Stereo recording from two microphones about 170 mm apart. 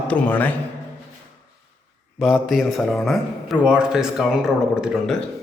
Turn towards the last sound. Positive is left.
turn(degrees=0)  # may be behind; listen again after turning